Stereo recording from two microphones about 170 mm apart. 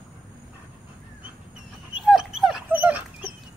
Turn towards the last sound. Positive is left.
turn(degrees=-10)  # may be behind; listen again after turning